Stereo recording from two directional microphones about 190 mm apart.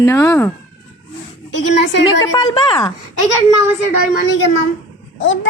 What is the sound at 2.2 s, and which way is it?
Speech, 20° left (ahead or behind).